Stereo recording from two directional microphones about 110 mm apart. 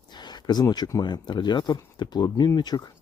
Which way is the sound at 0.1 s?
40° left (ahead or behind).